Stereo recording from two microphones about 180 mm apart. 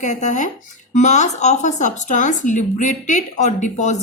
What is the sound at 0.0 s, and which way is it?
Speech, 40° left (ahead or behind).